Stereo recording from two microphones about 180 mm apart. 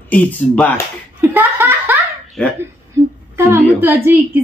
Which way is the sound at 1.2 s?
15° right (ahead or behind).